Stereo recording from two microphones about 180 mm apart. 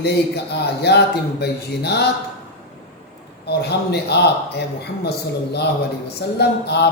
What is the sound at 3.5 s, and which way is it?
A man's voice, 65° left (ahead or behind).